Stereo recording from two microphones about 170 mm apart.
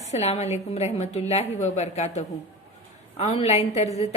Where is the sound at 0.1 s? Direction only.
40° left (ahead or behind).